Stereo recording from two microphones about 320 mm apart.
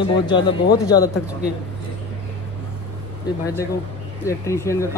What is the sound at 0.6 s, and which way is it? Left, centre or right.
Speech, left.